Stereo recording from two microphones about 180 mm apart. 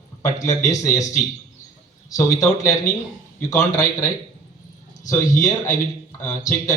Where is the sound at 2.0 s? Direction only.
20° left (ahead or behind).